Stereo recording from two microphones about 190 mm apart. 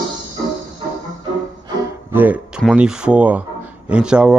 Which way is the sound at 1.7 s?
15° right (ahead or behind).